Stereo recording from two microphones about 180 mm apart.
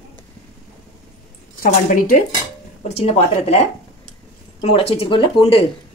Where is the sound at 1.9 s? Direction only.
50° left (ahead or behind).